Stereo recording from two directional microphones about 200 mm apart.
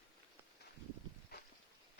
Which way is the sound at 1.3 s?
50° left (ahead or behind).